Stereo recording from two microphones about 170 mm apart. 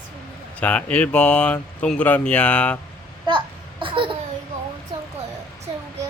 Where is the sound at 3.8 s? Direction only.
30° right (ahead or behind).